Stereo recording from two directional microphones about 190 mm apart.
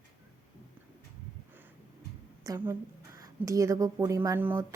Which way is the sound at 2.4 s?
15° right (ahead or behind).